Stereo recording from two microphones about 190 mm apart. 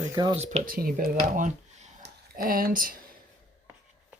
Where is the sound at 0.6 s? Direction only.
50° right (ahead or behind).